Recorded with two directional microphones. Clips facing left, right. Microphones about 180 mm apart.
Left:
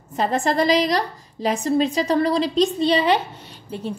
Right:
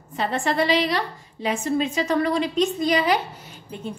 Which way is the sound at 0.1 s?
40° left (ahead or behind).